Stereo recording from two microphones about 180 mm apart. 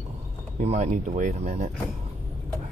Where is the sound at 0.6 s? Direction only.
40° right (ahead or behind).